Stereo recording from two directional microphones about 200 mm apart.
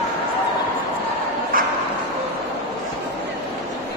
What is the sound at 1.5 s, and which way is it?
Bow-wow, 45° right (ahead or behind).